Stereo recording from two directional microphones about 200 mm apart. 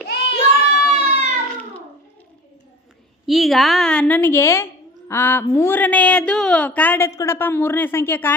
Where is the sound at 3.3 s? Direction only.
Centre (ahead or behind).